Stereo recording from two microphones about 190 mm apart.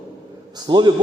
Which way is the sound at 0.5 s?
20° right (ahead or behind).